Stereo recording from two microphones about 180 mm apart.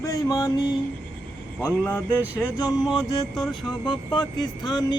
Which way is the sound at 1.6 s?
10° left (ahead or behind).